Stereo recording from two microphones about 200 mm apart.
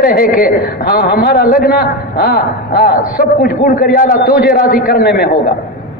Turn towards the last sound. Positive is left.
turn(degrees=50)  # may be behind; listen again after turning